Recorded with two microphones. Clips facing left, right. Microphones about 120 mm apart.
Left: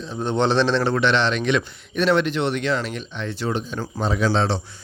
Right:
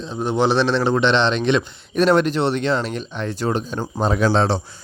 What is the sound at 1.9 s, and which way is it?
A man's voice, 40° right (ahead or behind).